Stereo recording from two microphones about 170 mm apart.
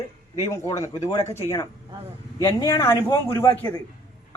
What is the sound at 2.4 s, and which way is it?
Speech, 20° left (ahead or behind).